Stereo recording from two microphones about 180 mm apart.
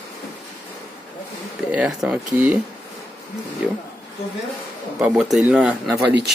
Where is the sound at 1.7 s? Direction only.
5° right (ahead or behind).